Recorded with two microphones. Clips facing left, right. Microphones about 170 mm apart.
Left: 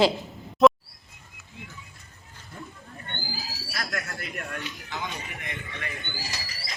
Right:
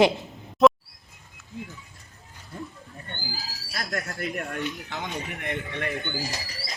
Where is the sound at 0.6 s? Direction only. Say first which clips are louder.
Even; centre (ahead or behind).